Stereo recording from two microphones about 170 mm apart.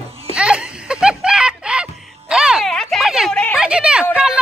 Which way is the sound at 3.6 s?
5° right (ahead or behind).